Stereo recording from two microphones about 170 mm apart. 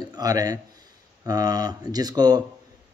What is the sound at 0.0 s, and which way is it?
A man's voice, 20° right (ahead or behind).